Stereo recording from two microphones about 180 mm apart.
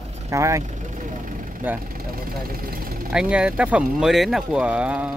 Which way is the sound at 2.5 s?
55° right (ahead or behind).